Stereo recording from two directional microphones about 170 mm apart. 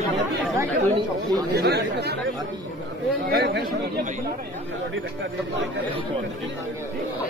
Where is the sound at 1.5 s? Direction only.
75° right (ahead or behind).